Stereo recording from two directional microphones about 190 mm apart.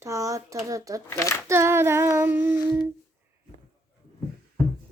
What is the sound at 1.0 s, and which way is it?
Speech, 15° left (ahead or behind).